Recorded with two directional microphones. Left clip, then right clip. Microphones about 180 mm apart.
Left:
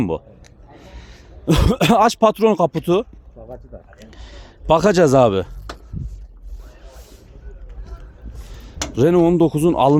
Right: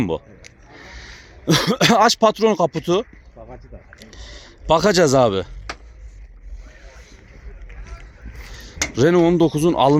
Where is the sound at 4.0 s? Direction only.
25° left (ahead or behind).